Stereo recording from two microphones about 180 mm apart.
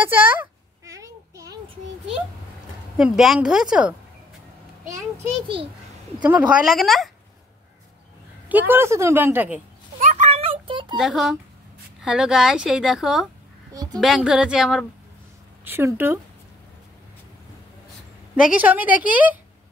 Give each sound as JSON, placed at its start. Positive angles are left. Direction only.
{"t": 0.0, "sound": "a sound", "side_deg": -10}
{"t": 3.0, "sound": "a woman's voice", "side_deg": -5}
{"t": 6.2, "sound": "a woman's voice", "side_deg": -10}
{"t": 8.5, "sound": "a woman's voice", "side_deg": -10}
{"t": 9.9, "sound": "a sound", "side_deg": -45}
{"t": 11.0, "sound": "a woman's voice", "side_deg": 0}
{"t": 18.3, "sound": "a woman's voice", "side_deg": -5}